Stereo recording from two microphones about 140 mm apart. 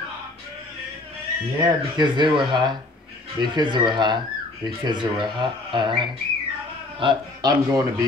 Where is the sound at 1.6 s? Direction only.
30° right (ahead or behind).